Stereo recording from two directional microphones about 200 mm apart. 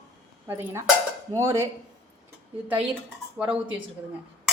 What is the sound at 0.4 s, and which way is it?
Speech, 10° right (ahead or behind).